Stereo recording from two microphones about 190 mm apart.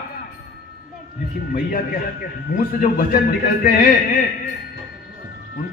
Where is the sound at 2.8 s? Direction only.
45° left (ahead or behind).